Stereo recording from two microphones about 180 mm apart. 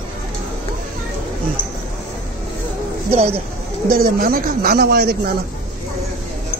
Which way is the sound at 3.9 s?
55° right (ahead or behind).